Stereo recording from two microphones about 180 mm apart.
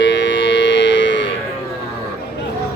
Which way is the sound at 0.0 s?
90° left.